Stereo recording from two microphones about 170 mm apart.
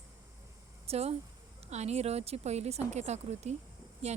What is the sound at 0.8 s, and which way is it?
Speech, 35° right (ahead or behind).